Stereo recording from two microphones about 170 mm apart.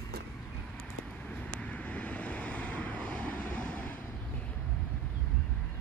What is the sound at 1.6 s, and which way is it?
Vehicle, 10° left (ahead or behind).